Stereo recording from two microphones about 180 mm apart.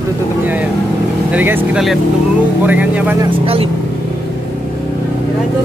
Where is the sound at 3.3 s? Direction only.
30° right (ahead or behind).